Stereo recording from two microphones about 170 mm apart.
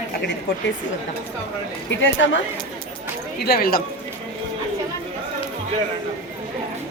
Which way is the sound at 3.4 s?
65° left (ahead or behind).